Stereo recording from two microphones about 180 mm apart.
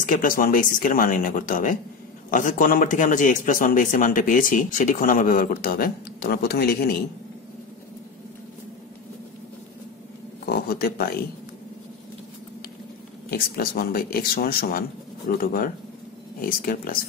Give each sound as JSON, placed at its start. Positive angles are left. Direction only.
{"t": 0.0, "sound": "a man's voice", "side_deg": 50}
{"t": 10.5, "sound": "a sound", "side_deg": 55}
{"t": 13.3, "sound": "a man's voice", "side_deg": 55}